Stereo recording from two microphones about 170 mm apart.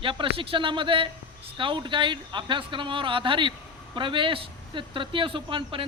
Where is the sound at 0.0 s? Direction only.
30° right (ahead or behind).